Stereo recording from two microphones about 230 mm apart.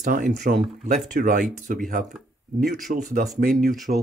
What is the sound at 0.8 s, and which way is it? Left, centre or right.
Speech, right.